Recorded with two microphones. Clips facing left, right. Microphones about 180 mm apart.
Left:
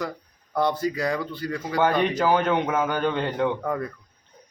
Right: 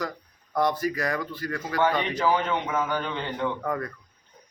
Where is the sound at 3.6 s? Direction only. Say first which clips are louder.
Left 2 dB; 10° left (ahead or behind).